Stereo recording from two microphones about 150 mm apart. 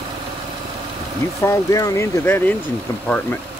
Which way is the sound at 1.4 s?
20° left (ahead or behind).